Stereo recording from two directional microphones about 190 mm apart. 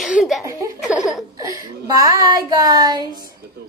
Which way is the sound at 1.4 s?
20° right (ahead or behind).